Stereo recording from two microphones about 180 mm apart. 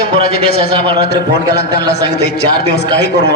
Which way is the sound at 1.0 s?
65° left (ahead or behind).